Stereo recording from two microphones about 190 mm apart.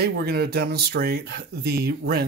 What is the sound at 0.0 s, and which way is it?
Speech, 55° right (ahead or behind).